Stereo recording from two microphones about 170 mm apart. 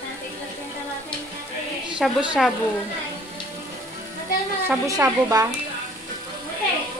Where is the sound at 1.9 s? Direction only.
5° right (ahead or behind).